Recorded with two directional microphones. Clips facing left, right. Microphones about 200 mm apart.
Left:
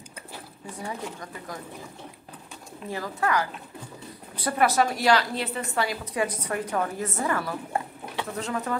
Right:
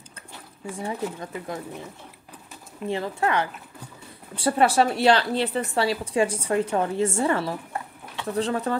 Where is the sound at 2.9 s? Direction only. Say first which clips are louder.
Right 2 dB; 25° right (ahead or behind).